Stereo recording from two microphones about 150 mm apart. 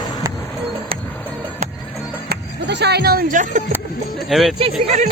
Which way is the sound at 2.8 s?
90° right.